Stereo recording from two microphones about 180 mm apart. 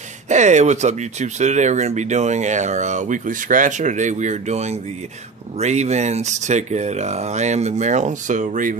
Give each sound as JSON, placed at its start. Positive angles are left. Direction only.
{"t": 0.3, "sound": "speech", "side_deg": -40}